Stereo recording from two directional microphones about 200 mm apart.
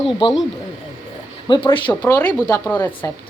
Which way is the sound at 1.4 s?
25° left (ahead or behind).